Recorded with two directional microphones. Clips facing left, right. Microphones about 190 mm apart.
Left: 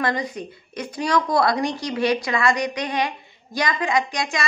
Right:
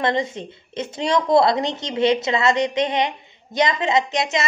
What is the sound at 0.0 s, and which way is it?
A woman's voice, 25° right (ahead or behind).